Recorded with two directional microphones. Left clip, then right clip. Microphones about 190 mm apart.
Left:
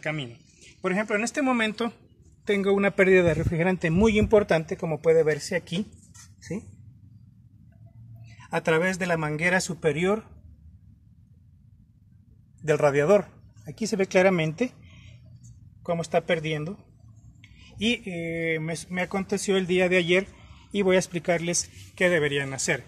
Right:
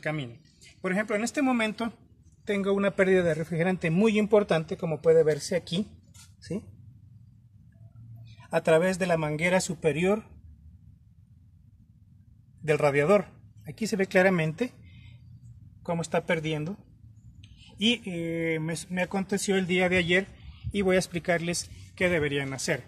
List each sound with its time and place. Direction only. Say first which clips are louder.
0.0 s a man's voice: left 1 dB; 10° right (ahead or behind)
2.4 s a man's voice: left 4 dB; 35° left (ahead or behind)
5.0 s speech: even; 10° left (ahead or behind)
8.5 s a man's voice: right 1 dB; 10° left (ahead or behind)
12.6 s a man's voice: left 2 dB; centre (ahead or behind)
15.8 s speech: left 4 dB; 10° left (ahead or behind)